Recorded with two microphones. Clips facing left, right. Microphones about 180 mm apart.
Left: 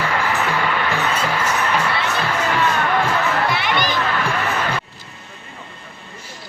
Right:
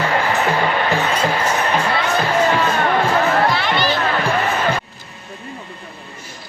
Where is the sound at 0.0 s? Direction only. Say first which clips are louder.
Right 3 dB; 35° right (ahead or behind).